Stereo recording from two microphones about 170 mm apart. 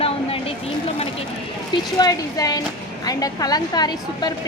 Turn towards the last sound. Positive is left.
turn(degrees=25)  # may be behind; listen again after turning